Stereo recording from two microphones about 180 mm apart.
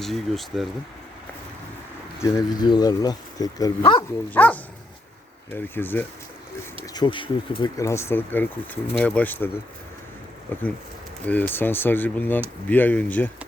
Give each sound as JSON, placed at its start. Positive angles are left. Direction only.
{"t": 0.0, "sound": "speech", "side_deg": 0}
{"t": 2.2, "sound": "speech", "side_deg": 20}
{"t": 4.3, "sound": "speech", "side_deg": 10}
{"t": 6.8, "sound": "speech", "side_deg": 25}
{"t": 10.5, "sound": "speech", "side_deg": 10}